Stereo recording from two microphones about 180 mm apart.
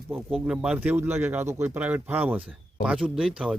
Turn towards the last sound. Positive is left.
turn(degrees=-5)  # may be behind; listen again after turning